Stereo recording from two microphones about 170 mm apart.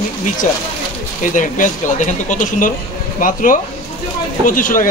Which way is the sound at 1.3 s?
50° left (ahead or behind).